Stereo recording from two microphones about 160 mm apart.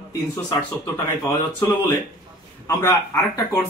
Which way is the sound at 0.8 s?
15° left (ahead or behind).